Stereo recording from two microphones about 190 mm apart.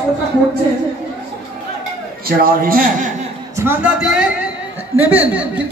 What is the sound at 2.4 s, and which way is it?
Speech, 50° right (ahead or behind).